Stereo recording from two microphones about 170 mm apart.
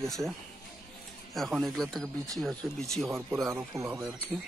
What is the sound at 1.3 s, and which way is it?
Speech, centre (ahead or behind).